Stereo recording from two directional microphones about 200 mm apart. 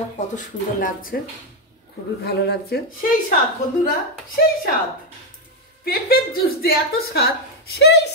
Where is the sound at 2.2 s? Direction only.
55° left (ahead or behind).